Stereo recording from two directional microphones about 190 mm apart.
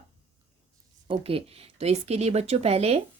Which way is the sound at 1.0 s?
30° right (ahead or behind).